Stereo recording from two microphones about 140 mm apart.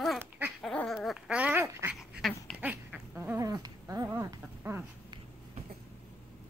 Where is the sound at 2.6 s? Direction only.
10° right (ahead or behind).